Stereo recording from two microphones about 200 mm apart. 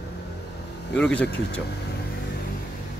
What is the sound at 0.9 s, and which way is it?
Speech, 5° left (ahead or behind).